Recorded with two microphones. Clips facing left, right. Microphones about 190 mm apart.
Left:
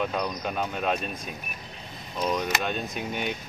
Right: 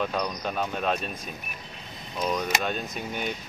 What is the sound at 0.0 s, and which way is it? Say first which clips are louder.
Speech: even; centre (ahead or behind).